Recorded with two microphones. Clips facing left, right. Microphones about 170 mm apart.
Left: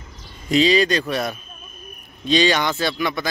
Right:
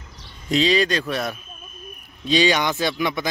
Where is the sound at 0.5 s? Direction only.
Centre (ahead or behind).